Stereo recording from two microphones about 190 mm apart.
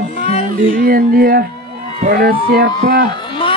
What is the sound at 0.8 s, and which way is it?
Speech, 50° right (ahead or behind).